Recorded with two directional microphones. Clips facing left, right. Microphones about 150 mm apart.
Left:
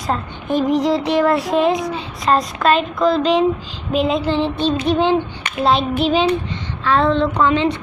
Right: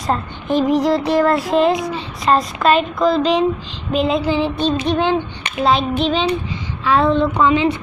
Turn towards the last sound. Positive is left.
turn(degrees=-5)  # may be behind; listen again after turning